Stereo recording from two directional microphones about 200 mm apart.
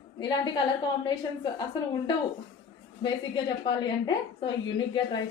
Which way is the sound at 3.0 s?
20° left (ahead or behind).